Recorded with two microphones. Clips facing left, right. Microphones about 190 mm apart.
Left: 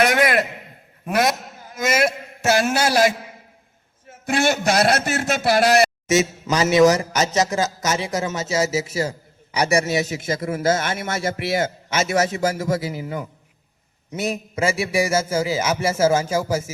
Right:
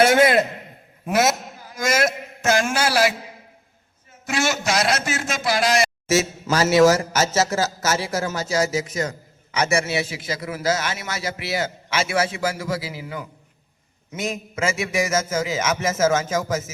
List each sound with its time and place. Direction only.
0.0 s a man's voice: 25° right (ahead or behind)
1.0 s a man's voice: 5° right (ahead or behind)
1.7 s a sound: 5° left (ahead or behind)
2.6 s a man's voice: 40° left (ahead or behind)
4.3 s a man's voice: 55° left (ahead or behind)
6.1 s a man's voice: 20° left (ahead or behind)
6.7 s speech: centre (ahead or behind)
7.3 s a man's voice: 15° left (ahead or behind)
8.0 s speech: centre (ahead or behind)
8.5 s a man's voice: 25° left (ahead or behind)